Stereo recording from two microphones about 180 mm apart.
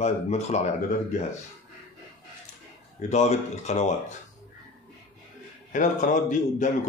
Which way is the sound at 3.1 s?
40° left (ahead or behind).